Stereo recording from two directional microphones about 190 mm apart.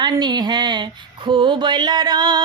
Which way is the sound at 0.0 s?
20° right (ahead or behind).